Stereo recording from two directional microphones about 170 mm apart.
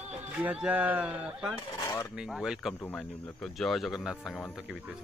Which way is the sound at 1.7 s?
20° left (ahead or behind).